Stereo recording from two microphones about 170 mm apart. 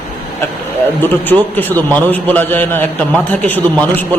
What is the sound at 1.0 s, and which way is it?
A man's voice, 10° left (ahead or behind).